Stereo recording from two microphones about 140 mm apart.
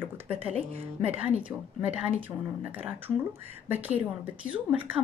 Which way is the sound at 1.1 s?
10° right (ahead or behind).